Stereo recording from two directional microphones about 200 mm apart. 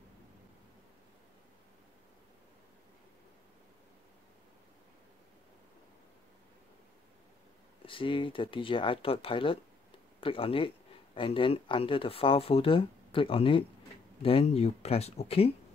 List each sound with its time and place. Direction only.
7.8 s speech: 25° left (ahead or behind)